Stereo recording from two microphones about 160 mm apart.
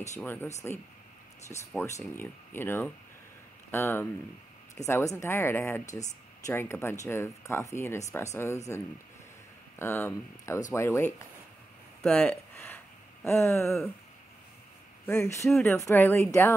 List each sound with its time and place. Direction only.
0.2 s speech: 10° left (ahead or behind)
1.8 s speech: 15° left (ahead or behind)
9.8 s speech: 15° left (ahead or behind)
12.0 s a sound: 10° left (ahead or behind)
15.0 s speech: 15° left (ahead or behind)
15.5 s speech: 5° left (ahead or behind)
15.8 s speech: 15° left (ahead or behind)